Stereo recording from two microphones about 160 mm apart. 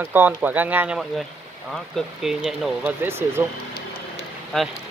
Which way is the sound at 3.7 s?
35° left (ahead or behind).